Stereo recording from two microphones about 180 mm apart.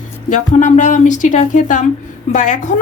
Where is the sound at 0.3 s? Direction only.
45° left (ahead or behind).